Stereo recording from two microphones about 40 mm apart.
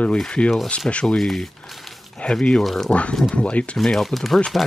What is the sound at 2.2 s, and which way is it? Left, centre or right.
Speech, left.